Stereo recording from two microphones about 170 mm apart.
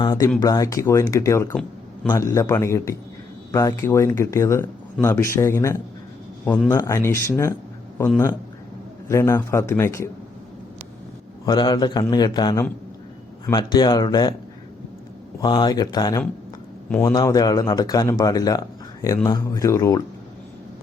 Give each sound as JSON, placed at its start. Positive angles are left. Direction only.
{"t": 0.0, "sound": "a sound", "side_deg": 25}
{"t": 0.4, "sound": "speech", "side_deg": 20}
{"t": 9.0, "sound": "speech", "side_deg": 15}
{"t": 11.4, "sound": "speech", "side_deg": 25}
{"t": 15.4, "sound": "speech", "side_deg": 25}